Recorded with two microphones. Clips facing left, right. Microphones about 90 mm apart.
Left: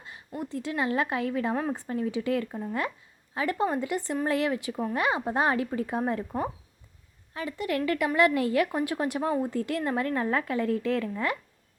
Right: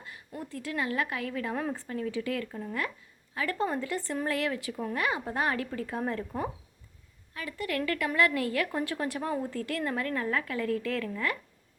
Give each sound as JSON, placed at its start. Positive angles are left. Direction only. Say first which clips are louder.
{"t": 0.0, "sound": "a woman's voice", "louder": "left 4 dB", "side_deg": 20}